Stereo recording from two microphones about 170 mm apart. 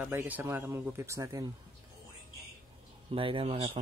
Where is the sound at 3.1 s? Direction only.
30° right (ahead or behind).